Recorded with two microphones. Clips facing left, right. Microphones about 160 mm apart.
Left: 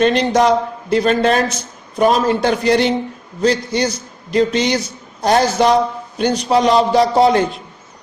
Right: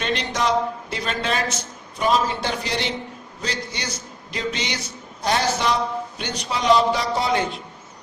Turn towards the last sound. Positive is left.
turn(degrees=40)  # may be behind; listen again after turning